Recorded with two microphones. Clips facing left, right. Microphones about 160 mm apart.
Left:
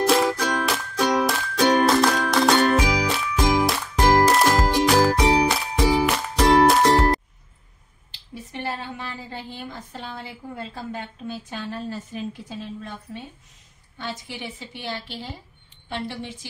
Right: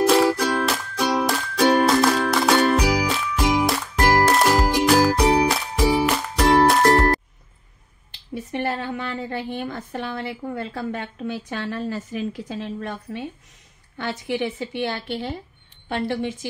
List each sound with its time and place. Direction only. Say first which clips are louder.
0.0 s music: right 3 dB; centre (ahead or behind)
8.1 s a woman's voice: right 8 dB; 60° right (ahead or behind)